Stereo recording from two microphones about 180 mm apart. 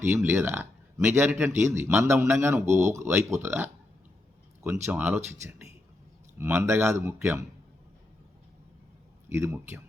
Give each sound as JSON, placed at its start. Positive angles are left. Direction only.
{"t": 0.0, "sound": "speech", "side_deg": -10}
{"t": 9.3, "sound": "speech", "side_deg": -15}